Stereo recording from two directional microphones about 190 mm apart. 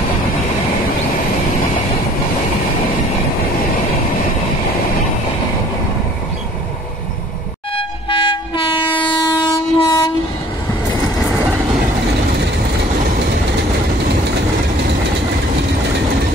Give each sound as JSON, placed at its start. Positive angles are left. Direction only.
{"t": 7.7, "sound": "train", "side_deg": 25}